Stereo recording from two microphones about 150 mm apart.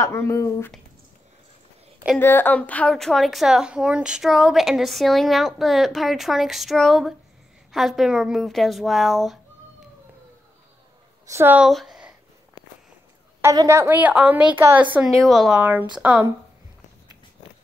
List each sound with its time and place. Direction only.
0.0 s speech: 20° left (ahead or behind)
2.1 s a woman's voice: 15° left (ahead or behind)
11.2 s a woman's voice: 15° right (ahead or behind)
11.6 s speech: centre (ahead or behind)
13.4 s a woman's voice: 20° right (ahead or behind)